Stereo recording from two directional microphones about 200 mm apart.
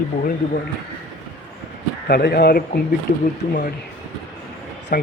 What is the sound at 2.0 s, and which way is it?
Speech, 50° left (ahead or behind).